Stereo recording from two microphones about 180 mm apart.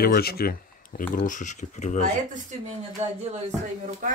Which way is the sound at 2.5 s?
40° right (ahead or behind).